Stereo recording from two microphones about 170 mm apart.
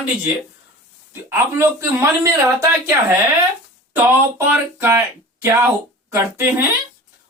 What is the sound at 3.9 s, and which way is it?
Speech, 10° right (ahead or behind).